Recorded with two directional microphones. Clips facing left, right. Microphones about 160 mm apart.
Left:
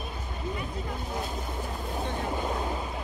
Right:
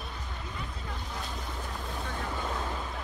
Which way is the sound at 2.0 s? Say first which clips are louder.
Left 5 dB; 20° left (ahead or behind).